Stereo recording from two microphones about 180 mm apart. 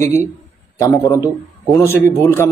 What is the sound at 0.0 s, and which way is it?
A man's voice, 15° left (ahead or behind).